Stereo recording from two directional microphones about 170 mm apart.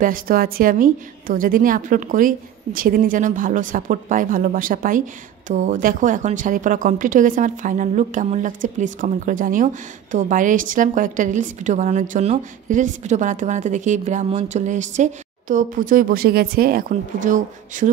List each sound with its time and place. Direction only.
0.0 s a woman's voice: 55° right (ahead or behind)